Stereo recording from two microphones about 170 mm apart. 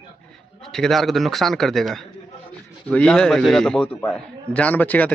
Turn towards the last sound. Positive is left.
turn(degrees=10)  # may be behind; listen again after turning